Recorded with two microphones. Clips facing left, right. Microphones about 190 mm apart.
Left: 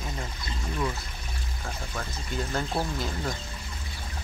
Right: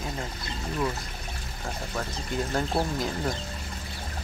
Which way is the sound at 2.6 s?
15° right (ahead or behind).